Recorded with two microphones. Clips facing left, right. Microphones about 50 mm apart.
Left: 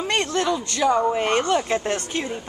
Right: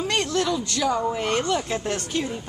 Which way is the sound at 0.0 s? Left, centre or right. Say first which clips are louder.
Left 1 dB; centre.